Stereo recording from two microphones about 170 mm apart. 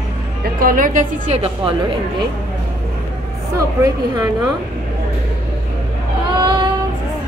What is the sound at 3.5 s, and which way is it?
Speech, 20° right (ahead or behind).